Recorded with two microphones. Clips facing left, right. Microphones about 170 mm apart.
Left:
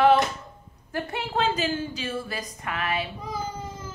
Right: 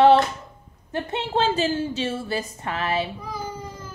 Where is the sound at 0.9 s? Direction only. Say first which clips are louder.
Right 3 dB; 25° right (ahead or behind).